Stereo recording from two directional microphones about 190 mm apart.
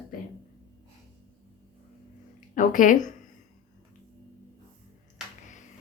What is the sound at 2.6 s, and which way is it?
Speech, 45° left (ahead or behind).